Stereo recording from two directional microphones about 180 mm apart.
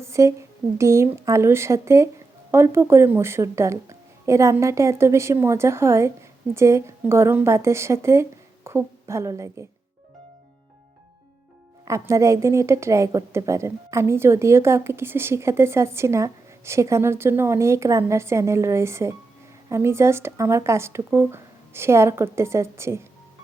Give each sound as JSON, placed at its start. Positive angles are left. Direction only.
{"t": 0.0, "sound": "a woman's voice", "side_deg": -15}
{"t": 11.9, "sound": "a woman's voice", "side_deg": -15}